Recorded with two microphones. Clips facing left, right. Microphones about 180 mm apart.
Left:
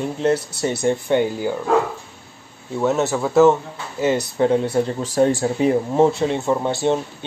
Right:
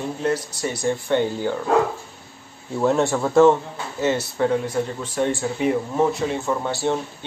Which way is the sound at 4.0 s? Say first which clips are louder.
Left 3 dB; 15° left (ahead or behind).